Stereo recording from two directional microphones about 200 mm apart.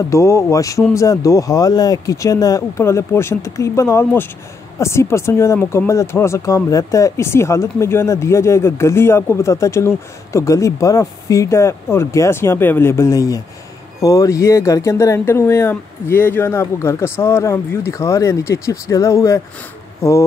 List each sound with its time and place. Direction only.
0.1 s speech: 15° left (ahead or behind)